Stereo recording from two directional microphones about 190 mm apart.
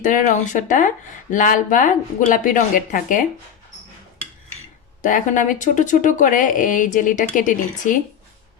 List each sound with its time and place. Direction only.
0.0 s speech: 45° left (ahead or behind)
5.0 s speech: 40° left (ahead or behind)